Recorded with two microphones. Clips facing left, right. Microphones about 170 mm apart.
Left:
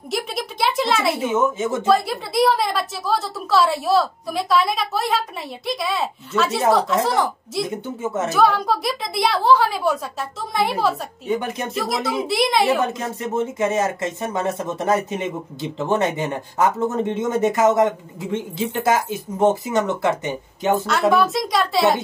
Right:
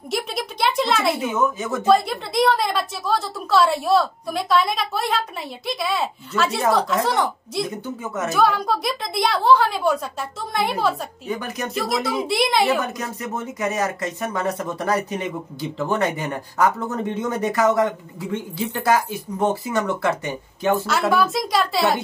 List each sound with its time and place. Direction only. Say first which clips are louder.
0.1 s a sound: even; centre (ahead or behind)
1.1 s speech: left 2 dB; 25° left (ahead or behind)
1.9 s a woman's voice: right 3 dB; centre (ahead or behind)
7.8 s speech: left 3 dB; 25° left (ahead or behind)
8.3 s a woman's voice: left 1 dB; centre (ahead or behind)
11.2 s speech: left 4 dB; 25° left (ahead or behind)
12.3 s a woman's voice: left 1 dB; centre (ahead or behind)
12.8 s speech: left 4 dB; 25° left (ahead or behind)
21.1 s a woman's voice: left 1 dB; centre (ahead or behind)